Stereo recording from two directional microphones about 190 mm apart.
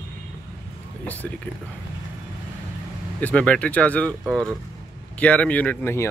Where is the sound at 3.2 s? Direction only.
5° left (ahead or behind).